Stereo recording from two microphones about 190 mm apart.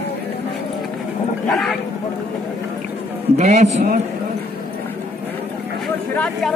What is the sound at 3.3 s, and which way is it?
Speech, 35° right (ahead or behind).